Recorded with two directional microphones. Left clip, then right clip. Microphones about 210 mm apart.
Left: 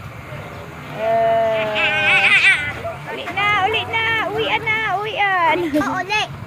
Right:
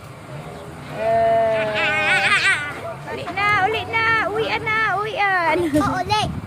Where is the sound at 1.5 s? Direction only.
25° right (ahead or behind).